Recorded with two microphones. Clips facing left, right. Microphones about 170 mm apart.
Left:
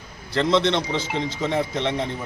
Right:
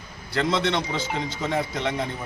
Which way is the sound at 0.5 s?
5° right (ahead or behind).